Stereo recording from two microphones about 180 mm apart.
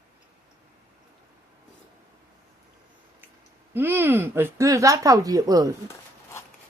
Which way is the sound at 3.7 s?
10° right (ahead or behind).